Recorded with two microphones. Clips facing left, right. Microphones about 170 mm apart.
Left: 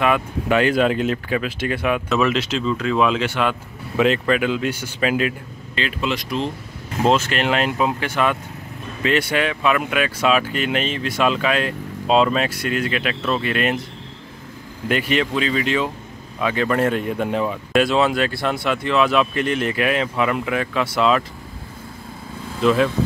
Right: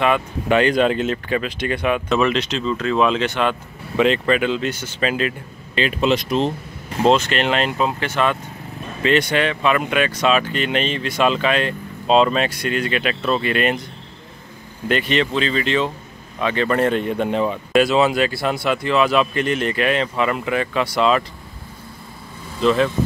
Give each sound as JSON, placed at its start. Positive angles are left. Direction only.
{"t": 0.0, "sound": "speech", "side_deg": 5}
{"t": 5.8, "sound": "speech", "side_deg": -20}
{"t": 7.0, "sound": "speech", "side_deg": 5}
{"t": 14.9, "sound": "speech", "side_deg": 10}
{"t": 22.6, "sound": "speech", "side_deg": 5}